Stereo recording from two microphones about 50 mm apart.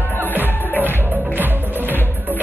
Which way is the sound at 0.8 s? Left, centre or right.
Right.